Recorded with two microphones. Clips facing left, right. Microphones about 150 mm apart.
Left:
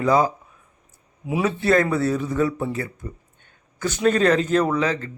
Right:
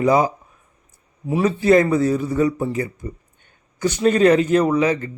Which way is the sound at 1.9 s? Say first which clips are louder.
Right 3 dB; 15° right (ahead or behind).